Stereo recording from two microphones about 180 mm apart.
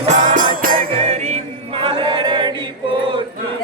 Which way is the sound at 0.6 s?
50° right (ahead or behind).